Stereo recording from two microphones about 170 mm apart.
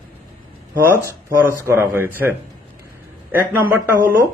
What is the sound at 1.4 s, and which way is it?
Speech, 10° right (ahead or behind).